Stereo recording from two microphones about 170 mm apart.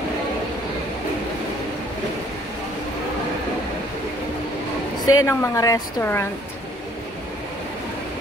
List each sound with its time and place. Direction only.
5.0 s a woman's voice: 20° left (ahead or behind)